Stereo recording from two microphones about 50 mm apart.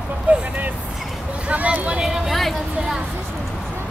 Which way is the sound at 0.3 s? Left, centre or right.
Right.